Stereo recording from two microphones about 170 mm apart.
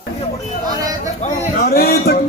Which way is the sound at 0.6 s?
20° right (ahead or behind).